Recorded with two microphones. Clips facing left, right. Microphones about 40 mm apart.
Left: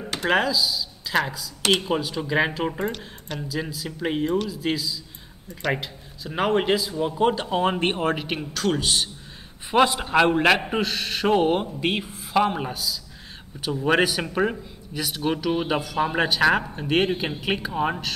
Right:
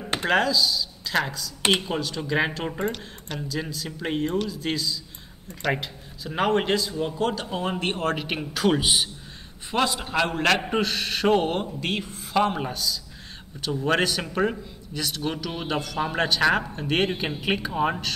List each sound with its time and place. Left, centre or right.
0.3 s speech: centre
7.2 s a man's voice: left
8.1 s speech: centre
8.4 s a man's voice: centre
9.7 s a man's voice: centre
10.7 s speech: centre